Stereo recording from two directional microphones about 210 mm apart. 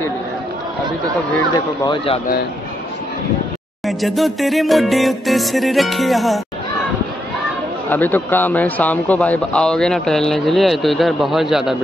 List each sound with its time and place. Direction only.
1.5 s speech: 20° left (ahead or behind)
3.8 s a man's voice: centre (ahead or behind)
7.9 s a man's voice: 10° left (ahead or behind)